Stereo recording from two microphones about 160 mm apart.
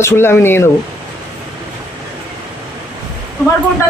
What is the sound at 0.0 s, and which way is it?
Speech, 15° left (ahead or behind).